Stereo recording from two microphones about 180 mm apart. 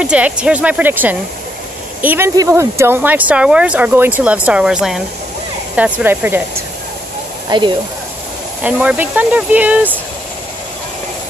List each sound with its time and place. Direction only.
0.0 s speech: 5° right (ahead or behind)
7.4 s speech: 25° right (ahead or behind)
8.6 s speech: 5° right (ahead or behind)